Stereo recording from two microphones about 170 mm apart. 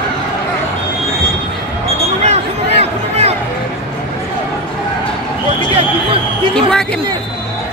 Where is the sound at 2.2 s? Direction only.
40° right (ahead or behind).